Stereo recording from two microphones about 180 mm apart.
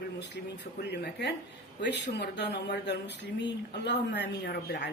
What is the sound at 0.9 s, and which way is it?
Speech, 70° left (ahead or behind).